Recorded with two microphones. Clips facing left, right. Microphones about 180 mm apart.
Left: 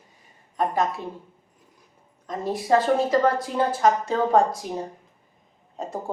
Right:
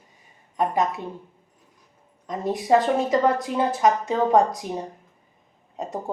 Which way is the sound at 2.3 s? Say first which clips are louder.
Right 1 dB; 20° right (ahead or behind).